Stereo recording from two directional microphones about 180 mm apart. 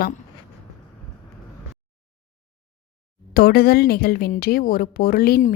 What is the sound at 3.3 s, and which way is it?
A woman's voice, 55° left (ahead or behind).